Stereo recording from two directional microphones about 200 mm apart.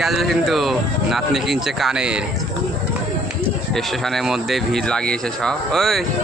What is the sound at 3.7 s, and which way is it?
Speech, centre (ahead or behind).